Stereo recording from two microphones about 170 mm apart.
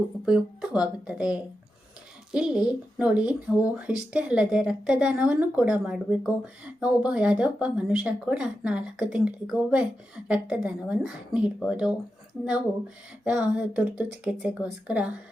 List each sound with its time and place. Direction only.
0.3 s speech: 5° right (ahead or behind)
13.2 s speech: 5° right (ahead or behind)